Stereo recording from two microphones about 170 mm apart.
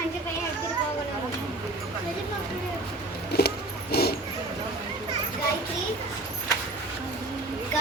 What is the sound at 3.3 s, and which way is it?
Music, 70° left (ahead or behind).